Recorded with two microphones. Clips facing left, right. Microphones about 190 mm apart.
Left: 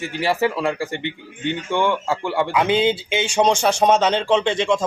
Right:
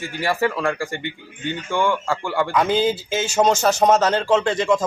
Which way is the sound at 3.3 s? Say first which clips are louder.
Even; 5° right (ahead or behind).